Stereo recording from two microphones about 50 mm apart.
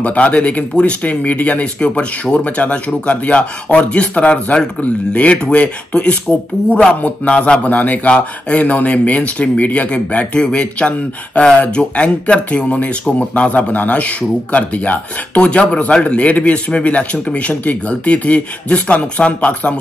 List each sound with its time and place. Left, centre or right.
0.0 s speech: left